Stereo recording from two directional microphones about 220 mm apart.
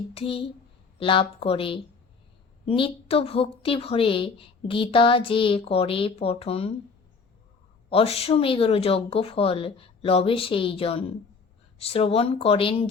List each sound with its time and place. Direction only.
0.1 s a woman's voice: 25° left (ahead or behind)
7.9 s a woman's voice: 25° left (ahead or behind)